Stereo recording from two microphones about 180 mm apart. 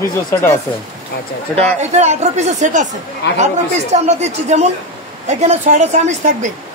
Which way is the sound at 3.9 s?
40° right (ahead or behind).